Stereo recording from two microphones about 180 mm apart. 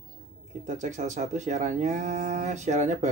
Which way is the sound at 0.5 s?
40° right (ahead or behind).